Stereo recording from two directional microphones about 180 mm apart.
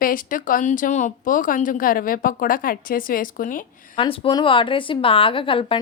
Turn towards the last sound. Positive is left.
turn(degrees=30)  # may be behind; listen again after turning